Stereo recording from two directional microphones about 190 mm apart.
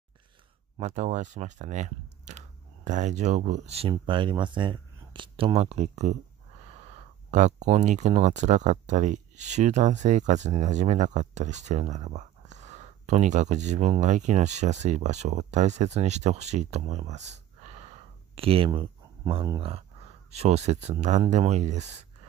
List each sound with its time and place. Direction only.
0.7 s speech: 35° right (ahead or behind)
7.2 s speech: 40° right (ahead or behind)